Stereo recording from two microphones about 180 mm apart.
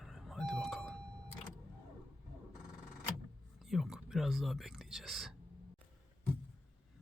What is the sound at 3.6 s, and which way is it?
Whispering, centre (ahead or behind).